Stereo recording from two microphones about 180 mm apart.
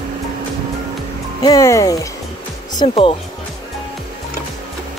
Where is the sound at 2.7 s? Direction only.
30° left (ahead or behind).